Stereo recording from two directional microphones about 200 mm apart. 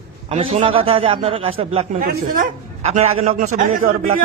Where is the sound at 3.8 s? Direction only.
90° right.